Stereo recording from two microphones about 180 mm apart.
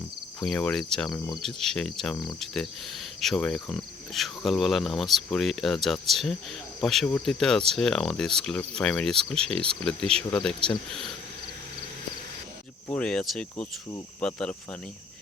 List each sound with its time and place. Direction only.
0.3 s speech: 5° left (ahead or behind)
12.9 s speech: 5° left (ahead or behind)